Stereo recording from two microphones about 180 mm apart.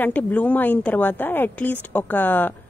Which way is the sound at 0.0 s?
10° left (ahead or behind).